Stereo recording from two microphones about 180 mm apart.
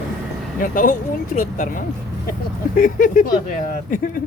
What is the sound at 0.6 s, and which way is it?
Speech, 50° left (ahead or behind).